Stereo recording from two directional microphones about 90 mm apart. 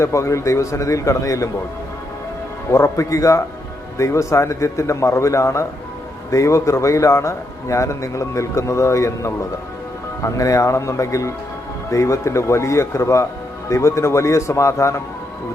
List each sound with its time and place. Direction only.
0.0 s a man's voice: 35° left (ahead or behind)
2.6 s a man's voice: 30° left (ahead or behind)